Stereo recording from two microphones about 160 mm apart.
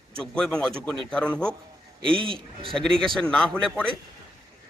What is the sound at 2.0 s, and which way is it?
Speech, 30° right (ahead or behind).